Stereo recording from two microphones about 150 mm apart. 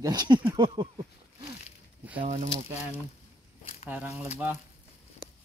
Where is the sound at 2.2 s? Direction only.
55° right (ahead or behind).